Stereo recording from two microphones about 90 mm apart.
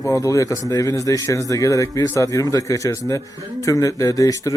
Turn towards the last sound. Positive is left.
turn(degrees=40)  # may be behind; listen again after turning